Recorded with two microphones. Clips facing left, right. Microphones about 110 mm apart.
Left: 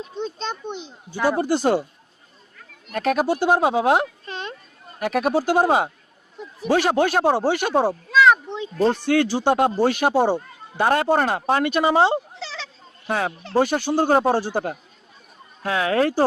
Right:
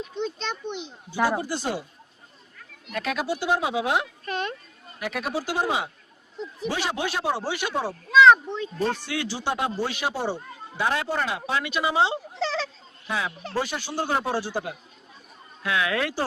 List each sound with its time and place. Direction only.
0.0 s a child's voice: 35° left (ahead or behind)
1.4 s speech: 60° left (ahead or behind)
2.9 s speech: 50° left (ahead or behind)
4.3 s a sound: 30° left (ahead or behind)
4.9 s speech: 50° left (ahead or behind)
8.1 s a sound: 5° left (ahead or behind)
8.4 s speech: 20° left (ahead or behind)
9.0 s speech: 50° left (ahead or behind)
12.4 s a sound: 45° right (ahead or behind)
13.1 s a child's voice: 55° left (ahead or behind)